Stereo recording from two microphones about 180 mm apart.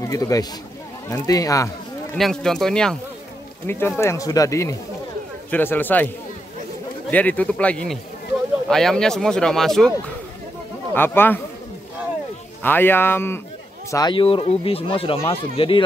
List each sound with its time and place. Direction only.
0.0 s speech: 20° left (ahead or behind)
2.1 s speech: centre (ahead or behind)
7.1 s speech: 10° left (ahead or behind)
11.0 s speech: 10° left (ahead or behind)
12.6 s speech: 10° left (ahead or behind); by 15.8 s 30° left (ahead or behind)